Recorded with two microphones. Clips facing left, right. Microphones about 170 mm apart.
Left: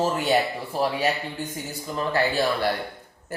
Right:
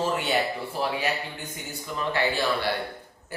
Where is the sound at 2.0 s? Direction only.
40° left (ahead or behind).